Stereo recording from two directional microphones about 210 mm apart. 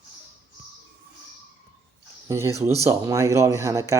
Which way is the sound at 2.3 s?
15° right (ahead or behind).